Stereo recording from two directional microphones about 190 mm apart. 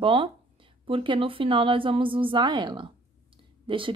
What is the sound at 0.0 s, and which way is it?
A woman's voice, 30° right (ahead or behind).